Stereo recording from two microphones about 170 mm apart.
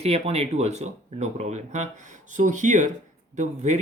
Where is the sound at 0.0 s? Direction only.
35° right (ahead or behind).